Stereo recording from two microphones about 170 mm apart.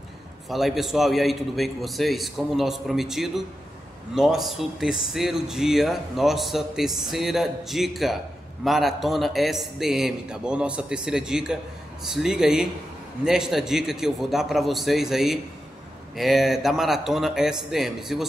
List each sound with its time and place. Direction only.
0.5 s speech: centre (ahead or behind)